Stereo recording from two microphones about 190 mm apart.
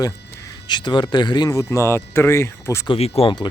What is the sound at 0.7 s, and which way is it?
Speech, 25° left (ahead or behind).